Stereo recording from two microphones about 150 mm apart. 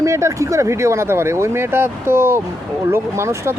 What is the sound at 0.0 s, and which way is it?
Speech, 20° right (ahead or behind).